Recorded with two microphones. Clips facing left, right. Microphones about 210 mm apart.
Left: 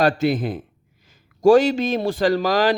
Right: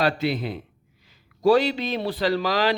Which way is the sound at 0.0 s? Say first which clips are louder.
Left 5 dB; 45° left (ahead or behind).